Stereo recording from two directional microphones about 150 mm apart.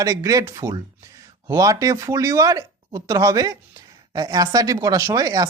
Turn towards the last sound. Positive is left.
turn(degrees=-25)  # may be behind; listen again after turning